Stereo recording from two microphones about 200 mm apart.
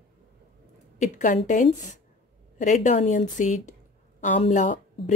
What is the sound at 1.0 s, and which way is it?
Speech, 40° left (ahead or behind).